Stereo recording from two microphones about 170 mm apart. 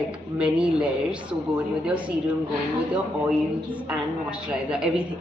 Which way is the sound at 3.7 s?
10° right (ahead or behind).